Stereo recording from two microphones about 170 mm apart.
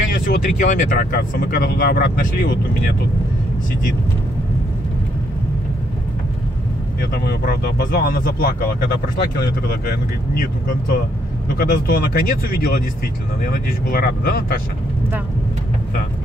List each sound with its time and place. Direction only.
0.1 s speech: 55° left (ahead or behind)
7.0 s speech: 65° left (ahead or behind)
9.7 s speech: 60° left (ahead or behind)